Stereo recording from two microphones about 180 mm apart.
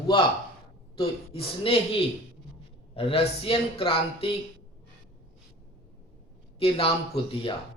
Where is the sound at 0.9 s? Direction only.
30° left (ahead or behind).